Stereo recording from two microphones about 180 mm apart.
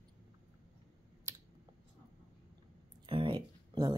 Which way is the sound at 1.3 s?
15° right (ahead or behind).